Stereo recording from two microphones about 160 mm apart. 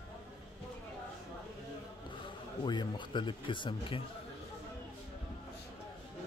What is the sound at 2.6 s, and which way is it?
Speech, 30° left (ahead or behind).